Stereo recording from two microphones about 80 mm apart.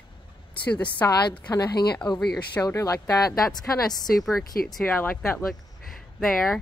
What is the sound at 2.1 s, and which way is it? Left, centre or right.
Speech, centre.